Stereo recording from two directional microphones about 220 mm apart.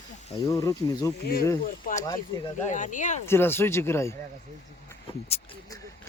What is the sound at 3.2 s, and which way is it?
Speech, 10° left (ahead or behind).